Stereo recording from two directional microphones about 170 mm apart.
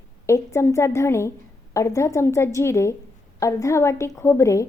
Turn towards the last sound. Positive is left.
turn(degrees=15)  # may be behind; listen again after turning